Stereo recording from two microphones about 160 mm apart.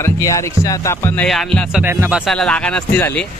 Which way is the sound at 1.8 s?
15° right (ahead or behind).